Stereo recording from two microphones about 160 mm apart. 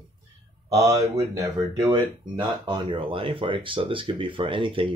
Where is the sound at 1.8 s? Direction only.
30° right (ahead or behind).